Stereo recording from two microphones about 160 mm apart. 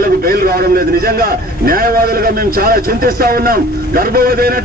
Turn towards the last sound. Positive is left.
turn(degrees=-70)  # may be behind; listen again after turning